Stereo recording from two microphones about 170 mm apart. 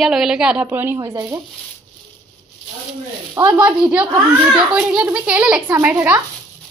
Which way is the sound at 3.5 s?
5° right (ahead or behind).